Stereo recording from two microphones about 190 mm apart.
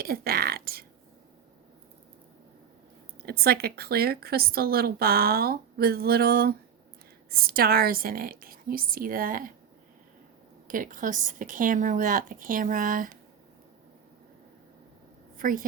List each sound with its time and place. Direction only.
0.0 s a woman's voice: 55° right (ahead or behind)
3.2 s a woman's voice: 55° right (ahead or behind)
10.7 s a woman's voice: 45° right (ahead or behind)
15.4 s a woman's voice: 45° right (ahead or behind)